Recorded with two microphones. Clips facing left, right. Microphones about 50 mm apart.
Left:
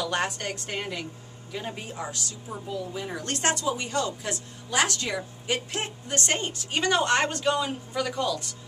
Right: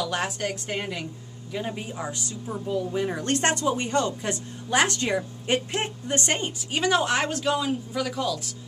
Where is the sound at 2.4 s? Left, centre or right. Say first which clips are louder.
Right 7 dB; centre.